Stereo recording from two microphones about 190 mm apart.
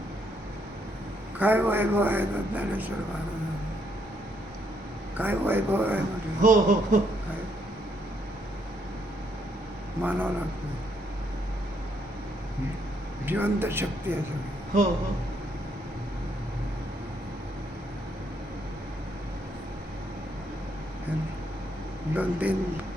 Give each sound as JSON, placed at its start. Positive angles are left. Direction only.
{"t": 1.4, "sound": "a man's voice", "side_deg": -10}
{"t": 5.1, "sound": "a man's voice", "side_deg": -10}
{"t": 6.4, "sound": "speech", "side_deg": -40}
{"t": 10.0, "sound": "a man's voice", "side_deg": -10}
{"t": 13.2, "sound": "a man's voice", "side_deg": -10}
{"t": 22.1, "sound": "a man's voice", "side_deg": -10}